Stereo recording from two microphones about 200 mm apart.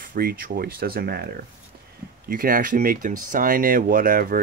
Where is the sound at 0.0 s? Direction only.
45° right (ahead or behind).